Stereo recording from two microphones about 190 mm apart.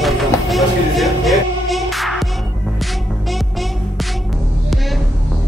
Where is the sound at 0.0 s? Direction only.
Centre (ahead or behind).